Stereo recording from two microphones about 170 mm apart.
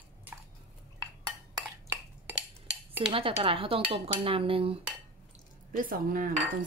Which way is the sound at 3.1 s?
35° right (ahead or behind).